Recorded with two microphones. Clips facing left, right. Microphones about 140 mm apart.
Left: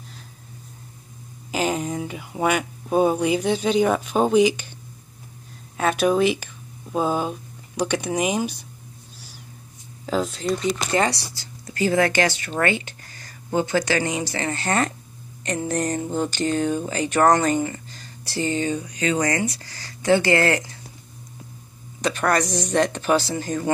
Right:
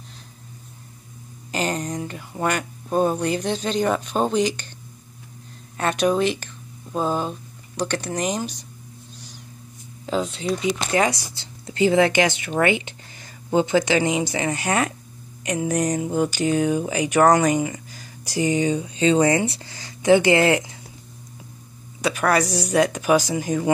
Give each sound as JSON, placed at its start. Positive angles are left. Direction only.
{"t": 1.5, "sound": "speech", "side_deg": 5}
{"t": 5.8, "sound": "speech", "side_deg": 5}
{"t": 10.0, "sound": "speech", "side_deg": 0}
{"t": 11.1, "sound": "speech", "side_deg": -20}
{"t": 22.0, "sound": "speech", "side_deg": -5}